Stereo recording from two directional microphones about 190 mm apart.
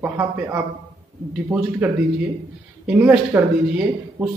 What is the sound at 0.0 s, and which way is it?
Speech, 10° right (ahead or behind).